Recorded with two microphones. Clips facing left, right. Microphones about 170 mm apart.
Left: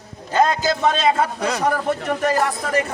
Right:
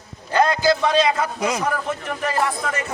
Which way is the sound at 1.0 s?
30° left (ahead or behind).